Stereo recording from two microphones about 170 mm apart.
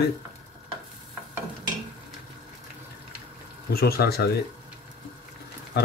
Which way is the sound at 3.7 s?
65° left (ahead or behind).